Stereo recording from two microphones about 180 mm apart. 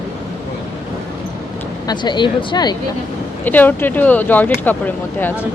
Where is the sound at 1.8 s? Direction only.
25° left (ahead or behind).